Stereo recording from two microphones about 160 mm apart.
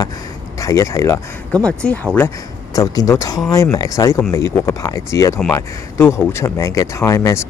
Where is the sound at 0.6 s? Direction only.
20° left (ahead or behind).